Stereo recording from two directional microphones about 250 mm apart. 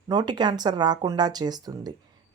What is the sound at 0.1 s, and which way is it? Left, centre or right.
Speech, centre.